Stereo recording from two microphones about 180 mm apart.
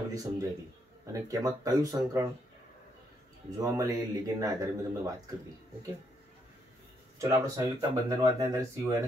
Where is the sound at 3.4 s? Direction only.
20° right (ahead or behind).